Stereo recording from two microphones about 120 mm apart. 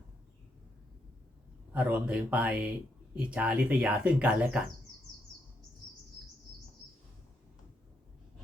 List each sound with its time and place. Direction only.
1.7 s speech: 15° right (ahead or behind)